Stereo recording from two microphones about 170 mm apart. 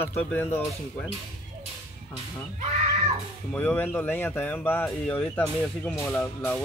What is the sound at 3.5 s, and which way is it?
Speech, 10° left (ahead or behind).